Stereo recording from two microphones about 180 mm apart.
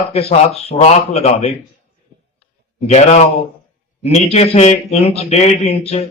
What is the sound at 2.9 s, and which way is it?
A man's voice, 40° left (ahead or behind).